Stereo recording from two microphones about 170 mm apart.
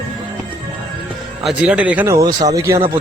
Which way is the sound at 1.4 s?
5° right (ahead or behind).